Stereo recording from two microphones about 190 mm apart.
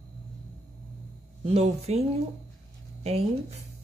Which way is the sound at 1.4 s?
30° right (ahead or behind).